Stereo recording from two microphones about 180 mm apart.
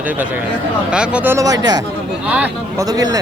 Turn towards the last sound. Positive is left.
turn(degrees=-20)  # may be behind; listen again after turning